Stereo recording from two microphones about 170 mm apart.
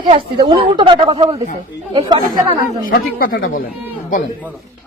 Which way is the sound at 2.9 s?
60° left (ahead or behind).